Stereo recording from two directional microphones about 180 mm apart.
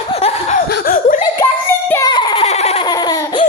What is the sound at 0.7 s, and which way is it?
Speech, 55° left (ahead or behind).